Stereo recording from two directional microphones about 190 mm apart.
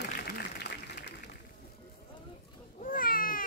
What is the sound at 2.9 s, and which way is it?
Baby cry, 50° left (ahead or behind).